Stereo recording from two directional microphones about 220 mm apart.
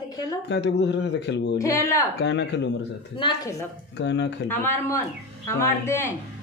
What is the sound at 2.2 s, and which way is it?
Speech, 55° left (ahead or behind).